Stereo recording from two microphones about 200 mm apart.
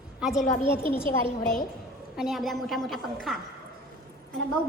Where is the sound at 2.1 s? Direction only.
Centre (ahead or behind).